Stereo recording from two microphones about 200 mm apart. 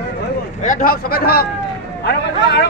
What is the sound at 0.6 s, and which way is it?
Speech, 40° left (ahead or behind).